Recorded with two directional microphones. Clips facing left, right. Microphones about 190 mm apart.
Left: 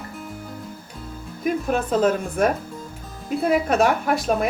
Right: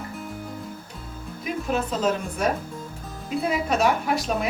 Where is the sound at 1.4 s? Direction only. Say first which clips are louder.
Left 4 dB; 55° left (ahead or behind).